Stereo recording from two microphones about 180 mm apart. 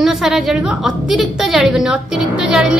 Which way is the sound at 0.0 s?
Centre (ahead or behind).